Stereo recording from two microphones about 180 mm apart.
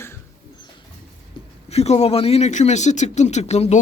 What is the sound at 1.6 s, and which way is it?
Speech, 35° left (ahead or behind).